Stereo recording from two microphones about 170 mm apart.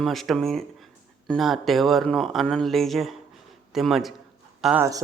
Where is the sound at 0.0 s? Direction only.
Centre (ahead or behind).